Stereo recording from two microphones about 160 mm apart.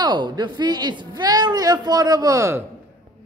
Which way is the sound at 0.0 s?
25° right (ahead or behind).